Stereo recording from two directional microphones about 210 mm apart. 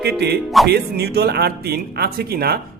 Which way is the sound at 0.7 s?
50° right (ahead or behind).